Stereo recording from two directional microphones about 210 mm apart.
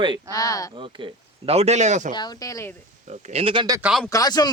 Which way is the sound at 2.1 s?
20° left (ahead or behind).